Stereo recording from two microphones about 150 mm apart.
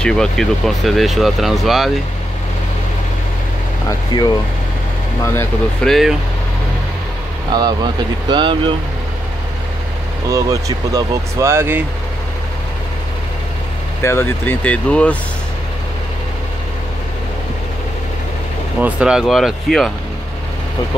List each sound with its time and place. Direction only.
0.0 s speech: 5° left (ahead or behind)
4.1 s speech: 30° left (ahead or behind)
5.2 s speech: 15° left (ahead or behind)
5.9 s speech: centre (ahead or behind)
7.5 s speech: 30° right (ahead or behind)
10.3 s speech: 20° right (ahead or behind)
14.0 s speech: 15° left (ahead or behind)
18.8 s speech: 10° right (ahead or behind)